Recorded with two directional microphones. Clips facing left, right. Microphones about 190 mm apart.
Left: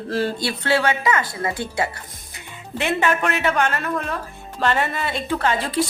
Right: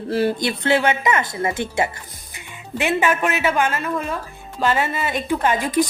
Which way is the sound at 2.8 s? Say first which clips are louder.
Right 1 dB; 10° right (ahead or behind).